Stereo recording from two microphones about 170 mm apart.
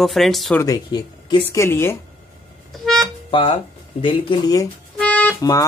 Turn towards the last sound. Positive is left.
turn(degrees=5)  # may be behind; listen again after turning